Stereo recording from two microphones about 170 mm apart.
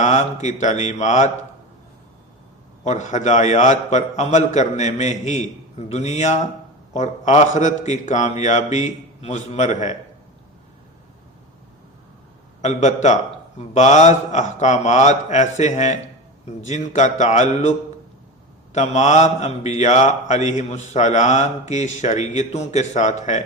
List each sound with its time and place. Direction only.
0.0 s mantra: 45° left (ahead or behind)
2.8 s mantra: 45° left (ahead or behind)
12.6 s mantra: 45° left (ahead or behind)